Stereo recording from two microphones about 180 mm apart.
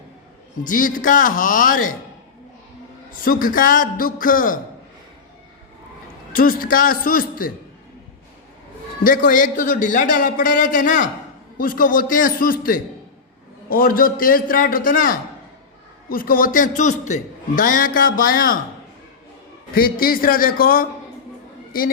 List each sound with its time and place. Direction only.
0.6 s a man's voice: 50° left (ahead or behind)
3.2 s a man's voice: 50° left (ahead or behind)
6.3 s a man's voice: 50° left (ahead or behind)
9.0 s a man's voice: 50° left (ahead or behind)
19.7 s a man's voice: 55° left (ahead or behind)